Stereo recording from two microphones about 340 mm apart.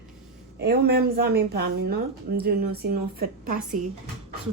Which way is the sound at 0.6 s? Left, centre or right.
Right.